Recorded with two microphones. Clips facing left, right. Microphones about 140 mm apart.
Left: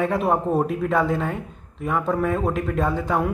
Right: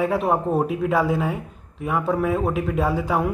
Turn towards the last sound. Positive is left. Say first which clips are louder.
# right 1 dB
turn(degrees=-5)  # may be behind; listen again after turning